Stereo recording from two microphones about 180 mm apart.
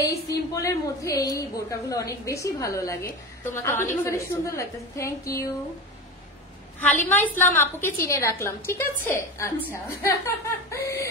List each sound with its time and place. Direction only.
0.0 s a woman's voice: 20° left (ahead or behind)
6.8 s a woman's voice: 10° left (ahead or behind)